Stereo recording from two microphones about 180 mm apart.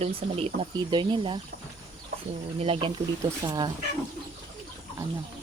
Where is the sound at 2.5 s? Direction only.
30° right (ahead or behind).